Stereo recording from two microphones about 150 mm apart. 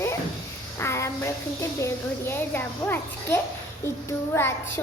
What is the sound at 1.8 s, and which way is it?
Child singing, 15° left (ahead or behind).